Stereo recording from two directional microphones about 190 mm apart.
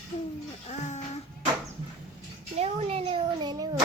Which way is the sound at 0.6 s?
40° left (ahead or behind).